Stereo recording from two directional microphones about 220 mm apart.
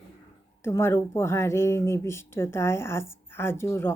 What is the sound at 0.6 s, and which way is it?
Speech, 10° left (ahead or behind).